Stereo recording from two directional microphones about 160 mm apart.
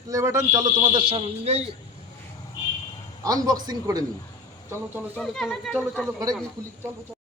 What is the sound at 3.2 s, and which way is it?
Speech, 25° right (ahead or behind).